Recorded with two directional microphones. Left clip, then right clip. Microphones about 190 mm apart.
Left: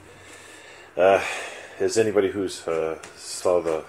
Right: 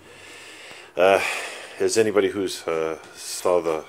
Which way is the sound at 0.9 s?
35° right (ahead or behind).